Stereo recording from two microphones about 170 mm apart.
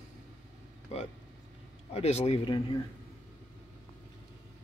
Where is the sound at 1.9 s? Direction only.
35° left (ahead or behind).